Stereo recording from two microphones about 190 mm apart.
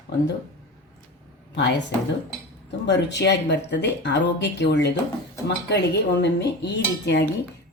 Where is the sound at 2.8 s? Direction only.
65° left (ahead or behind).